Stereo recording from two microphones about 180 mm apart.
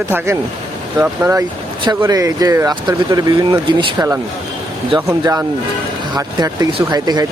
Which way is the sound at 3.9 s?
15° right (ahead or behind).